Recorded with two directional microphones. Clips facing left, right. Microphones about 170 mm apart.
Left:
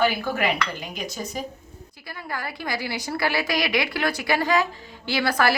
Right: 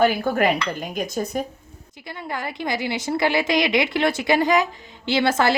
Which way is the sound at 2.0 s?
20° right (ahead or behind).